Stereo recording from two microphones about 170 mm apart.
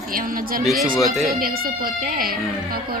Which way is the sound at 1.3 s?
60° right (ahead or behind).